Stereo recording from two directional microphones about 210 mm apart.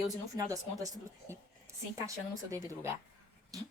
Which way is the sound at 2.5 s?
15° right (ahead or behind).